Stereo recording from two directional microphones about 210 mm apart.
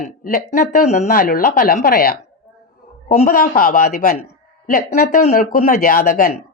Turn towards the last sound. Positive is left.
turn(degrees=45)  # may be behind; listen again after turning